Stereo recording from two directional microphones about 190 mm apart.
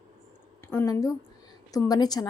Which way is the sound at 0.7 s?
15° left (ahead or behind).